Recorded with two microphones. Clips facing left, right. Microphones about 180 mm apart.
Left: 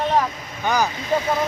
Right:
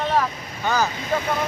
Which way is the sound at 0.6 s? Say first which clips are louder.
Left 1 dB; 15° left (ahead or behind).